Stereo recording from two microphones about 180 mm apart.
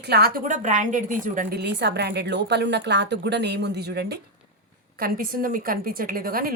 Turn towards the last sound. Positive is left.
turn(degrees=-55)  # may be behind; listen again after turning